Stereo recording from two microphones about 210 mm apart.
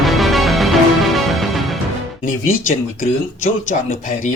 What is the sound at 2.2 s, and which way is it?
Speech, 40° left (ahead or behind).